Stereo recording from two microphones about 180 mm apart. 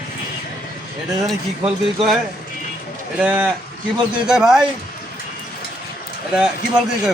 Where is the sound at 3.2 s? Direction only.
10° right (ahead or behind).